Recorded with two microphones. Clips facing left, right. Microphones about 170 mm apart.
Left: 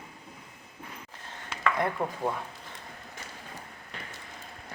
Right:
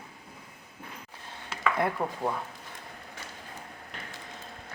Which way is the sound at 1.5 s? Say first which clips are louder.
Even; 5° right (ahead or behind).